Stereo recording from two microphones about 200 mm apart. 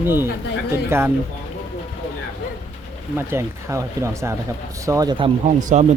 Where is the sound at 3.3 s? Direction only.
15° right (ahead or behind); by 5.8 s 35° right (ahead or behind).